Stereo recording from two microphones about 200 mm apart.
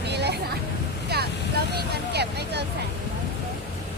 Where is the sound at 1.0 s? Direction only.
55° right (ahead or behind).